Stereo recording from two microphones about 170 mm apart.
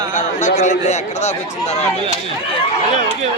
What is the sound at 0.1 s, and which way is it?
A man's voice, 45° left (ahead or behind).